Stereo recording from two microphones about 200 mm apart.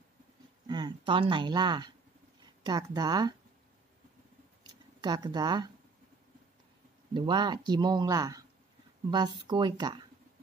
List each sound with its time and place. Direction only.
0.7 s speech: 20° right (ahead or behind)
5.0 s speech: 20° right (ahead or behind)
7.2 s speech: 25° right (ahead or behind)